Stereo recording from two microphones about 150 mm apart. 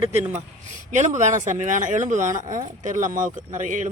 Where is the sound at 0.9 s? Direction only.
55° right (ahead or behind).